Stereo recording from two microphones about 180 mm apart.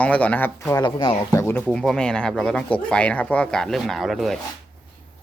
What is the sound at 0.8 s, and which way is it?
Speech, 25° left (ahead or behind).